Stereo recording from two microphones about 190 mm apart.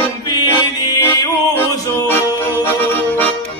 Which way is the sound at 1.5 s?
15° left (ahead or behind).